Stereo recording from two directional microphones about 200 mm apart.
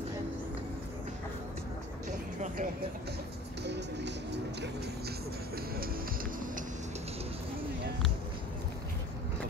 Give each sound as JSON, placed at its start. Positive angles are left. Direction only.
{"t": 2.0, "sound": "vehicle", "side_deg": -40}
{"t": 3.6, "sound": "music", "side_deg": -60}